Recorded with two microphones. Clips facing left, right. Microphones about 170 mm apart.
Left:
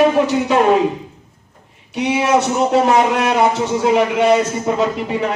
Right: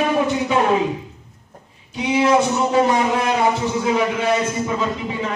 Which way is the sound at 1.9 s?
70° left (ahead or behind).